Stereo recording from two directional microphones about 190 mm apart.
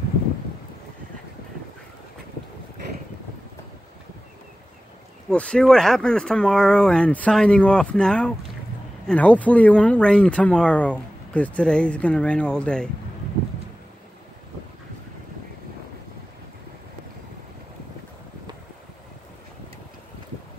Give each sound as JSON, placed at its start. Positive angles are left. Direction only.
{"t": 5.3, "sound": "speech", "side_deg": 5}